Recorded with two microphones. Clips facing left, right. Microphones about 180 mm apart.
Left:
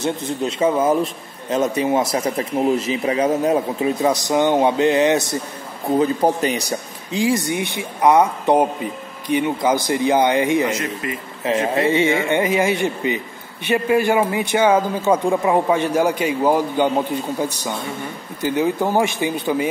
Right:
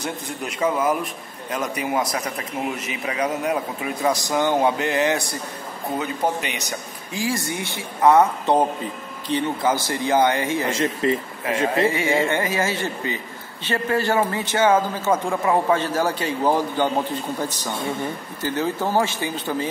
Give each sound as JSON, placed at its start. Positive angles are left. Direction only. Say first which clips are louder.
{"t": 0.0, "sound": "speech", "louder": "left 7 dB", "side_deg": 25}
{"t": 5.9, "sound": "speech", "louder": "left 7 dB", "side_deg": 35}
{"t": 7.1, "sound": "a man's voice", "louder": "left 6 dB", "side_deg": 20}
{"t": 10.7, "sound": "speech", "louder": "right 3 dB", "side_deg": -30}
{"t": 11.4, "sound": "a man's voice", "louder": "left 3 dB", "side_deg": 25}